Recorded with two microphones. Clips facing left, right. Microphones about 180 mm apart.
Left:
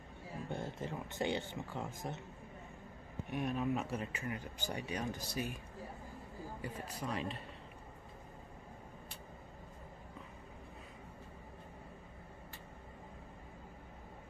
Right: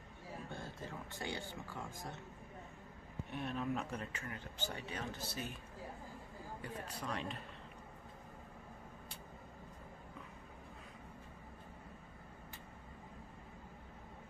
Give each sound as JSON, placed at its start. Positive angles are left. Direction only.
{"t": 0.5, "sound": "speech", "side_deg": 20}
{"t": 3.3, "sound": "speech", "side_deg": 10}
{"t": 6.6, "sound": "speech", "side_deg": 5}